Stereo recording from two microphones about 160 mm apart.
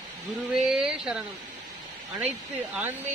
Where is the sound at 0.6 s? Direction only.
5° right (ahead or behind).